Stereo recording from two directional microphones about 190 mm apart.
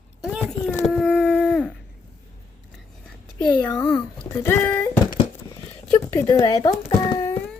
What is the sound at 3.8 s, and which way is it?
Speech, 5° left (ahead or behind).